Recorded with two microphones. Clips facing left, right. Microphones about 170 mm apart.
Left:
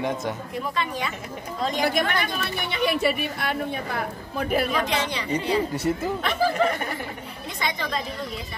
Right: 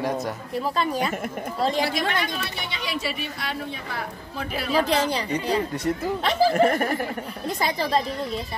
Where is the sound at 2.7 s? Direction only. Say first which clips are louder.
Left 9 dB; 55° left (ahead or behind).